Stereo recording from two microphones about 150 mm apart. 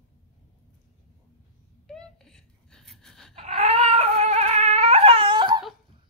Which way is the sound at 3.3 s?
50° right (ahead or behind).